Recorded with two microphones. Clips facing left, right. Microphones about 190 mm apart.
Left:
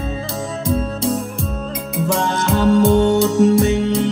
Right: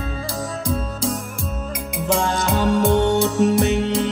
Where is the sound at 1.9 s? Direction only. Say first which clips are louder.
Left 1 dB; 15° right (ahead or behind).